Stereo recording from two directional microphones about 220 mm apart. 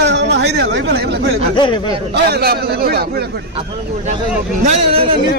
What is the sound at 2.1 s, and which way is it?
A man's voice, 45° right (ahead or behind).